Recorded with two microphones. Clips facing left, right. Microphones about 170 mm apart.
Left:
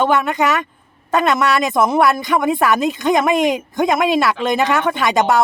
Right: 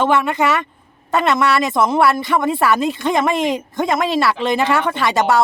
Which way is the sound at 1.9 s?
5° left (ahead or behind).